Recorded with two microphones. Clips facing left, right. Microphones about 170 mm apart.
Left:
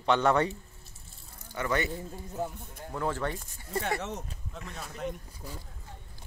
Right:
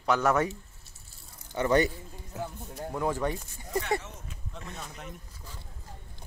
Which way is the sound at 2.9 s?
15° right (ahead or behind).